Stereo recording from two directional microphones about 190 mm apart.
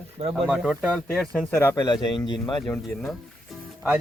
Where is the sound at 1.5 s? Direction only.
10° left (ahead or behind).